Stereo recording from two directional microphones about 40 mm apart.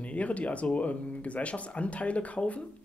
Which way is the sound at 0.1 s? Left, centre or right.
Left.